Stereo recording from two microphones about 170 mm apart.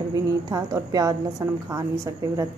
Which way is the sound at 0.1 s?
20° right (ahead or behind).